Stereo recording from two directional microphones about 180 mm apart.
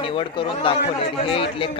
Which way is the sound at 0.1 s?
30° left (ahead or behind).